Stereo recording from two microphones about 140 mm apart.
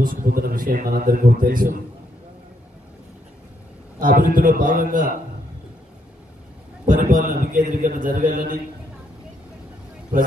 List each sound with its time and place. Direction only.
0.0 s a man's voice: 90° right
4.0 s a man's voice: 90° right; by 5.0 s 75° right (ahead or behind)
6.9 s a man's voice: 70° right (ahead or behind)